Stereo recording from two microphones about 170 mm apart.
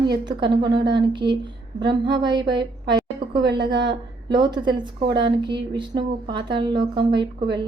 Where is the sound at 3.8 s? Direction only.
25° right (ahead or behind).